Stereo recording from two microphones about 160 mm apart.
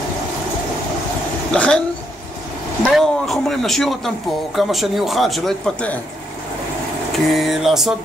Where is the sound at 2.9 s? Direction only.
Centre (ahead or behind).